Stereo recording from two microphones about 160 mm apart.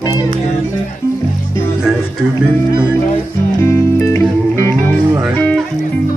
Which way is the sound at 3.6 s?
15° left (ahead or behind).